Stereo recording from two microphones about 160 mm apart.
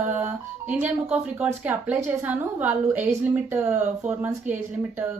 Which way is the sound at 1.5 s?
10° right (ahead or behind).